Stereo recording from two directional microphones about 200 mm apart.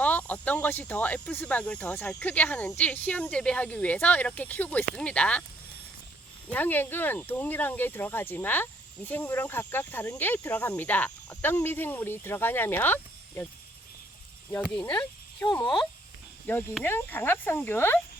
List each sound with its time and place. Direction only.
0.0 s speech: 10° left (ahead or behind)
6.5 s speech: 10° left (ahead or behind)
14.6 s speech: 5° left (ahead or behind)
16.5 s speech: 10° left (ahead or behind)